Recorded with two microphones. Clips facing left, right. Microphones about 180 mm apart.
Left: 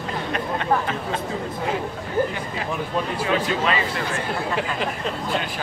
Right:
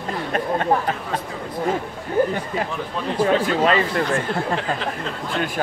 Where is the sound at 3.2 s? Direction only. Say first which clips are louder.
Right 7 dB; 45° right (ahead or behind).